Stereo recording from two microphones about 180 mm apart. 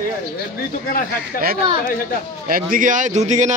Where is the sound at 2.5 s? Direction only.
50° right (ahead or behind).